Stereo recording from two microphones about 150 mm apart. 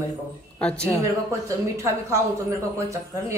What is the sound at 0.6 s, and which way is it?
Speech, 5° left (ahead or behind).